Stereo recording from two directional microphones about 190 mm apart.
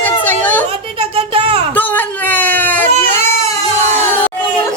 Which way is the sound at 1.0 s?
30° right (ahead or behind).